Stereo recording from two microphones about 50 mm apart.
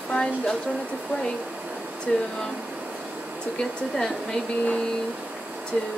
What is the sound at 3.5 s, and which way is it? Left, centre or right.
Speech, centre.